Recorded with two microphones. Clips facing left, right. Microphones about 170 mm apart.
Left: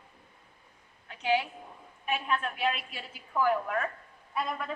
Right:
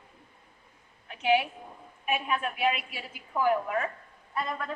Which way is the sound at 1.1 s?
20° right (ahead or behind).